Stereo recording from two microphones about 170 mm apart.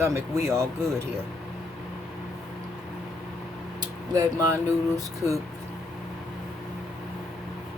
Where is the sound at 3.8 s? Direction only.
20° right (ahead or behind).